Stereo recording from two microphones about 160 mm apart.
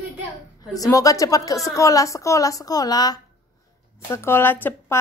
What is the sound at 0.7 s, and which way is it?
A woman's voice, 20° left (ahead or behind).